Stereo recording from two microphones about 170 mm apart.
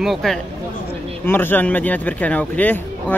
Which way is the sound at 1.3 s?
10° left (ahead or behind).